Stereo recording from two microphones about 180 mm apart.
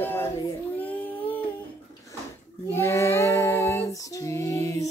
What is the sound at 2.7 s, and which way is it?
Female singing, 15° left (ahead or behind).